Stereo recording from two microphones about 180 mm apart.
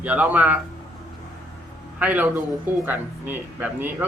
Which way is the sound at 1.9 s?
10° right (ahead or behind).